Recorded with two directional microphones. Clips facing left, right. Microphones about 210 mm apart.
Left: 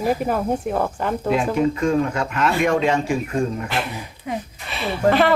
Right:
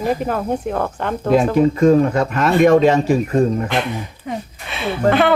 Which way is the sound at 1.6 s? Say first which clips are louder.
Right 6 dB; 40° right (ahead or behind).